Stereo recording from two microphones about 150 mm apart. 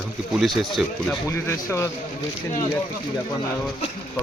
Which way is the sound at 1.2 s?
20° left (ahead or behind).